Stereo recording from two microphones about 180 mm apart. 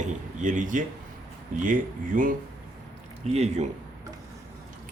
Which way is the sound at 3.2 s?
35° right (ahead or behind).